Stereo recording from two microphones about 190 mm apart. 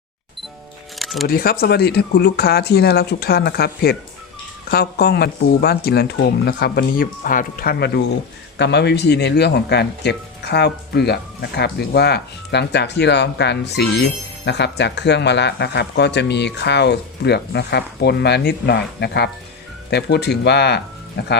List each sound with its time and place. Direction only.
0.9 s music: centre (ahead or behind)
1.3 s speech: 50° left (ahead or behind)